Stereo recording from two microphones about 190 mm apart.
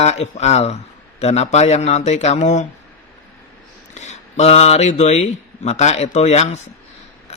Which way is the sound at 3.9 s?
35° left (ahead or behind).